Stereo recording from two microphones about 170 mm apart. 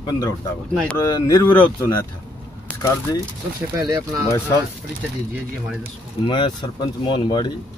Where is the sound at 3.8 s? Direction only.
20° right (ahead or behind).